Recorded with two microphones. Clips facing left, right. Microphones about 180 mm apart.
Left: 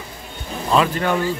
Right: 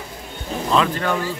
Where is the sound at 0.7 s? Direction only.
10° left (ahead or behind).